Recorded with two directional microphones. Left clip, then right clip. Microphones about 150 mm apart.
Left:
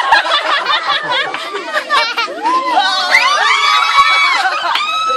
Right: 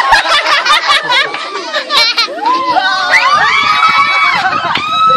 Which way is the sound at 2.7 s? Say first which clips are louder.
Right 1 dB; 60° left (ahead or behind).